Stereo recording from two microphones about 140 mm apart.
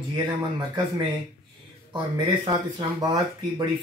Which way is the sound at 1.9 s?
30° right (ahead or behind).